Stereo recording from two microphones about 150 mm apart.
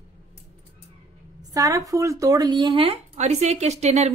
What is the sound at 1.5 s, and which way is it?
Speech, 20° right (ahead or behind).